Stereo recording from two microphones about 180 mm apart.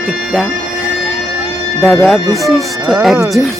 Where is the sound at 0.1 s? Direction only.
Centre (ahead or behind).